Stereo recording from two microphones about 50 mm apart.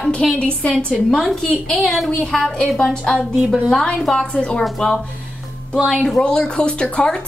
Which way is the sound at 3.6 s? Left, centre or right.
Centre.